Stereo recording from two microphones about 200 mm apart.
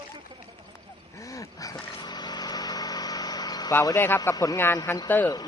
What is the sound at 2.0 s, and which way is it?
Engine, 20° left (ahead or behind).